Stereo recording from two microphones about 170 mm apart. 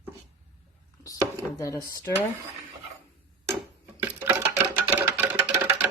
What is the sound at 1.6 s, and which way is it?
Speech, 20° left (ahead or behind).